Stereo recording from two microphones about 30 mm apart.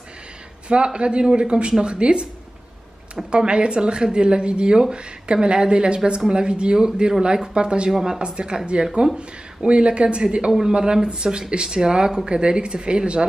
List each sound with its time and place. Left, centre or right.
0.7 s speech: right
3.3 s speech: right
7.9 s speech: centre
8.2 s speech: right